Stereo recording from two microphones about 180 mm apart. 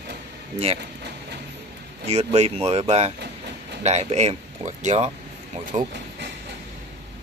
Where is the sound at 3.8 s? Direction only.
35° right (ahead or behind).